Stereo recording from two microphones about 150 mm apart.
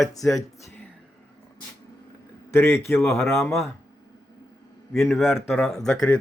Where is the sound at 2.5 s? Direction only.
15° left (ahead or behind).